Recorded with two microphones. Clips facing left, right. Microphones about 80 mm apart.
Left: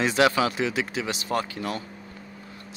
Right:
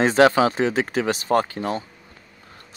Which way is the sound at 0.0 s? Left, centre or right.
Right.